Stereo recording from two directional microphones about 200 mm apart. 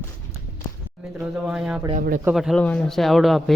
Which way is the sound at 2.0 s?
45° right (ahead or behind).